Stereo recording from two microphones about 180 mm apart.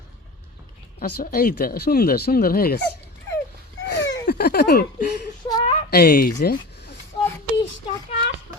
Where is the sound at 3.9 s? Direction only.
75° left (ahead or behind).